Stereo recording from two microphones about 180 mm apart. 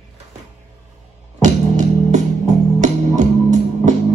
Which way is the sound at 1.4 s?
45° right (ahead or behind).